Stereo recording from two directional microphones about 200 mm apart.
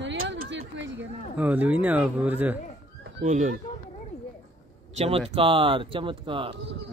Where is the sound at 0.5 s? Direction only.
65° right (ahead or behind).